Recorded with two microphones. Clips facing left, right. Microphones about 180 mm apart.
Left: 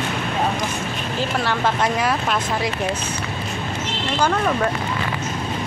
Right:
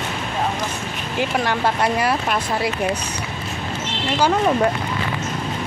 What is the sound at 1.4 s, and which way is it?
Speech, 10° right (ahead or behind).